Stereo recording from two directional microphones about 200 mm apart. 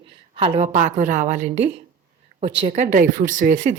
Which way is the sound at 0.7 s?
40° right (ahead or behind).